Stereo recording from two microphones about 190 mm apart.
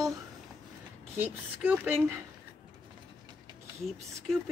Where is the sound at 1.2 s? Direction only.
10° right (ahead or behind).